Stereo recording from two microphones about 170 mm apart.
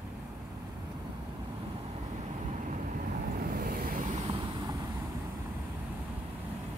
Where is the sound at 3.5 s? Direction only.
60° right (ahead or behind).